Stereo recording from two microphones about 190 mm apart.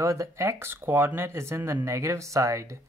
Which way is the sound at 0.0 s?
15° right (ahead or behind).